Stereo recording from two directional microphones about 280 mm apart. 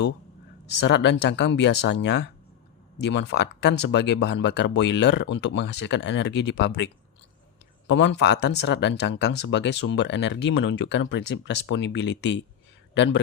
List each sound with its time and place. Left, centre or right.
0.8 s speech: left